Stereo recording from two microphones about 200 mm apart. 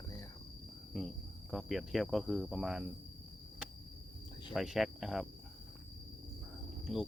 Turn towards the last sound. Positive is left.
turn(degrees=0)  # may be behind; listen again after turning